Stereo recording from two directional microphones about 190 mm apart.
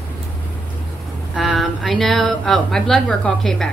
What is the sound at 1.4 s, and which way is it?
Speech, centre (ahead or behind).